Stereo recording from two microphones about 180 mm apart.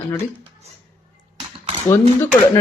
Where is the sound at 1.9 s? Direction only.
15° left (ahead or behind).